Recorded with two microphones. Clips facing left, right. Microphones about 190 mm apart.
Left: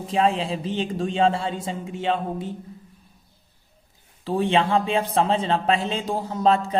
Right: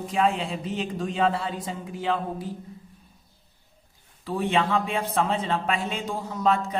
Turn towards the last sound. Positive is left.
turn(degrees=30)  # may be behind; listen again after turning